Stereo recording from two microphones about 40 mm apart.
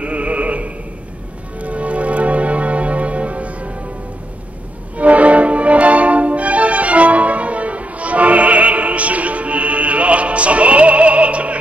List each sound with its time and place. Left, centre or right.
0.0 s opera: right
1.6 s music: right
4.9 s music: right